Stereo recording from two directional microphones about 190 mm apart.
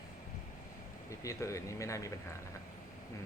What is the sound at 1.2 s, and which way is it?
Speech, 15° left (ahead or behind).